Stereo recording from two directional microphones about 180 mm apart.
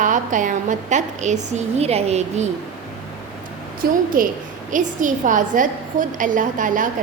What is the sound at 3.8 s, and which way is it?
A woman's voice, 50° right (ahead or behind).